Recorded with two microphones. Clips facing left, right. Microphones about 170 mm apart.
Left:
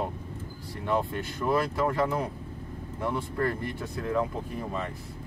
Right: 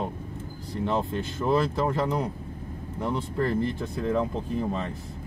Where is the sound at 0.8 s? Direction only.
20° right (ahead or behind).